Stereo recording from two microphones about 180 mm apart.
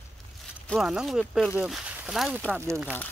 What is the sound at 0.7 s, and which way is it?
Speech, centre (ahead or behind).